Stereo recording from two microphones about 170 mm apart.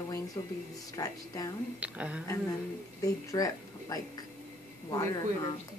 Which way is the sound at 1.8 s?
5° right (ahead or behind).